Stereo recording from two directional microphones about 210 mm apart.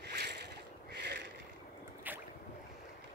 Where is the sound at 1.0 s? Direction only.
55° right (ahead or behind).